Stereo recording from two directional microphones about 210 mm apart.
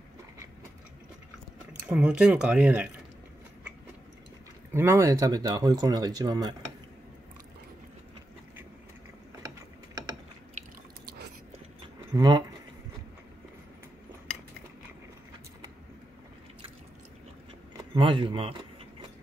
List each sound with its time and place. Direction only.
1.7 s speech: 5° right (ahead or behind)
4.7 s speech: 10° right (ahead or behind)
12.1 s speech: 20° right (ahead or behind)
17.9 s speech: 25° right (ahead or behind)